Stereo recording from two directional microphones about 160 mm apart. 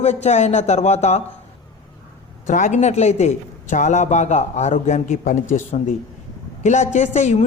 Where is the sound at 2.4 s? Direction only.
50° left (ahead or behind).